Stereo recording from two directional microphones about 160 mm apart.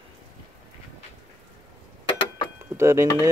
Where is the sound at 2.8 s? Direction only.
15° right (ahead or behind).